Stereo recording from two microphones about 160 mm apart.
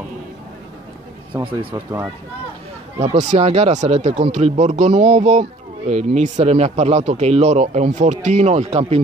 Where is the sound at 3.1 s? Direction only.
45° right (ahead or behind).